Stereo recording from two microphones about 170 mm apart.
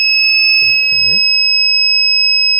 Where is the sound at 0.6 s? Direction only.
40° right (ahead or behind).